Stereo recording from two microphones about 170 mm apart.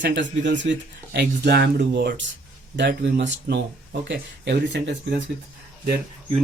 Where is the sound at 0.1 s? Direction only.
90° right.